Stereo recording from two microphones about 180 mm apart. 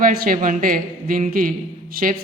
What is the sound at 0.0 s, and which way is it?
A woman's voice, 55° right (ahead or behind).